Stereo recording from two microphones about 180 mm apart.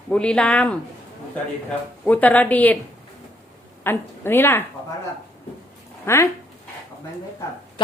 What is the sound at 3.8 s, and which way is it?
Speech, 10° left (ahead or behind).